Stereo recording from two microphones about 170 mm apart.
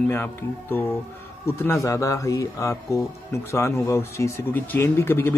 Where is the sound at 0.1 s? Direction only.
15° left (ahead or behind).